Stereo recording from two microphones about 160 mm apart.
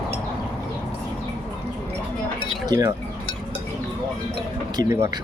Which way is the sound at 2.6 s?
20° right (ahead or behind).